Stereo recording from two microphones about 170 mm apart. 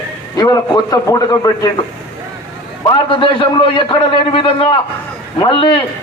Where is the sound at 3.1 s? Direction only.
30° left (ahead or behind).